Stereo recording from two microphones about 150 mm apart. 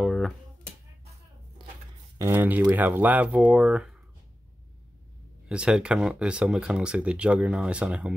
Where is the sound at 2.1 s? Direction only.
15° right (ahead or behind).